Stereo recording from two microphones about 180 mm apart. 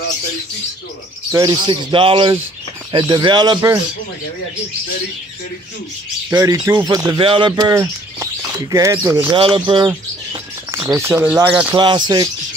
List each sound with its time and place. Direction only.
1.3 s speech: 20° right (ahead or behind)
6.3 s speech: 15° right (ahead or behind)
9.3 s speech: 30° right (ahead or behind)
10.7 s speech: 15° right (ahead or behind)
11.7 s speech: 25° right (ahead or behind)